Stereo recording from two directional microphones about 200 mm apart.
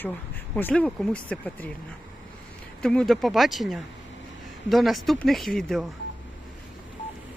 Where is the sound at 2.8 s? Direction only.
5° left (ahead or behind).